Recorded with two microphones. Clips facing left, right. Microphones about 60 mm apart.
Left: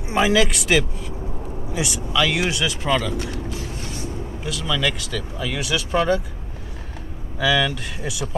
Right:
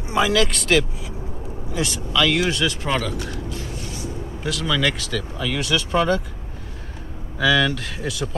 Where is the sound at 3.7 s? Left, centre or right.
Left.